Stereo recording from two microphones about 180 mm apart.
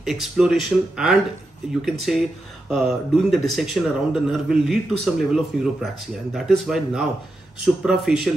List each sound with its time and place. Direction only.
0.0 s a man's voice: centre (ahead or behind)